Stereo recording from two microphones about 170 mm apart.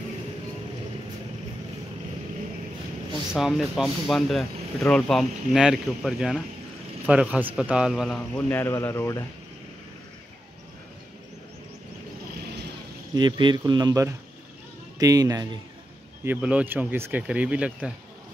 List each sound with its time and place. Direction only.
3.3 s a man's voice: centre (ahead or behind); by 9.2 s 15° left (ahead or behind)
13.1 s speech: 25° right (ahead or behind)
16.3 s speech: 5° right (ahead or behind)